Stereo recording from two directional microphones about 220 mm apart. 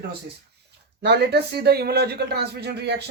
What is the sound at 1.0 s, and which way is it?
Speech, 50° right (ahead or behind).